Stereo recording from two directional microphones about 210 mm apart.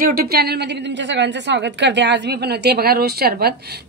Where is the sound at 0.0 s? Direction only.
45° right (ahead or behind).